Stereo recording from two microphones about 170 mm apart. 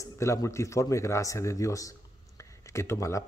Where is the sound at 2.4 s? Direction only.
15° left (ahead or behind).